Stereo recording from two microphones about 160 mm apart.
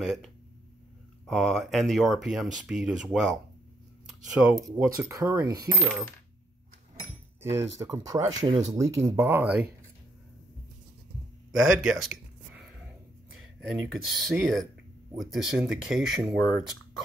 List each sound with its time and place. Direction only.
0.0 s speech: centre (ahead or behind)
4.8 s speech: 20° right (ahead or behind)
7.4 s speech: 20° right (ahead or behind)
9.4 s speech: 5° right (ahead or behind)
11.5 s a sound: centre (ahead or behind)
13.3 s speech: 5° right (ahead or behind)